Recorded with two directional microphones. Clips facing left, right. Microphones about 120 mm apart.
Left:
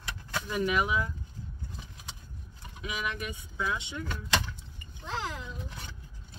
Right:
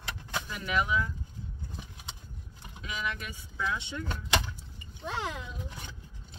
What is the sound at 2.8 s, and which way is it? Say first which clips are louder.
Speech: left 1 dB; 15° left (ahead or behind).